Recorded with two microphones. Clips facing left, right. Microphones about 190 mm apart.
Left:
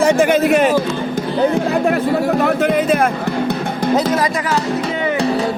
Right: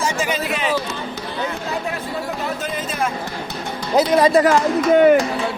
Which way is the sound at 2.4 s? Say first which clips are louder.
Left 10 dB; 65° left (ahead or behind).